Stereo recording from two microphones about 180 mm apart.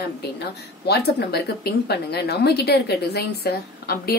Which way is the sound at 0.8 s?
65° left (ahead or behind).